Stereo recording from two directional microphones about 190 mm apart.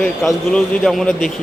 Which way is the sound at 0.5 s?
5° left (ahead or behind).